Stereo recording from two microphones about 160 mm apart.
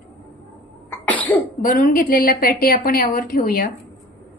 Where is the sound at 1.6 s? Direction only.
60° left (ahead or behind).